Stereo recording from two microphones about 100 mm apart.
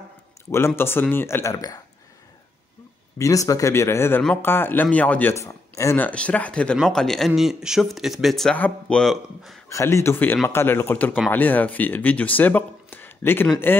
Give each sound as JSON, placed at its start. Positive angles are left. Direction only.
{"t": 0.5, "sound": "speech", "side_deg": 25}
{"t": 3.2, "sound": "speech", "side_deg": 35}
{"t": 5.3, "sound": "speech", "side_deg": 30}
{"t": 5.9, "sound": "speech", "side_deg": 15}
{"t": 8.5, "sound": "speech", "side_deg": 10}
{"t": 9.7, "sound": "speech", "side_deg": 30}